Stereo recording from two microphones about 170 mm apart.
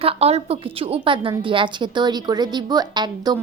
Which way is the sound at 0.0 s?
35° right (ahead or behind).